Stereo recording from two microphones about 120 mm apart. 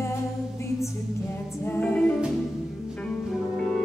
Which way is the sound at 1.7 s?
10° left (ahead or behind).